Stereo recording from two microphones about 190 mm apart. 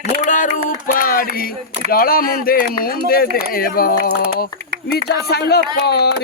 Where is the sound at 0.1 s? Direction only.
40° left (ahead or behind).